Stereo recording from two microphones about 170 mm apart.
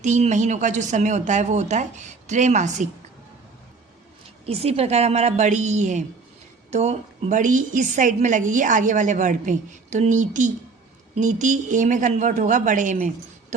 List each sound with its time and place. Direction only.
0.0 s a woman's voice: 45° right (ahead or behind)
4.4 s a woman's voice: 40° right (ahead or behind)